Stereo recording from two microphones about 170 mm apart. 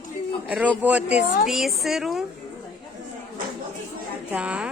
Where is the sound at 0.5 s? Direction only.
10° right (ahead or behind).